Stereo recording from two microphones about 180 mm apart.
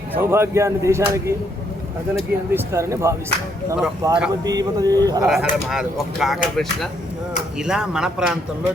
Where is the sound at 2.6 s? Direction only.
15° right (ahead or behind).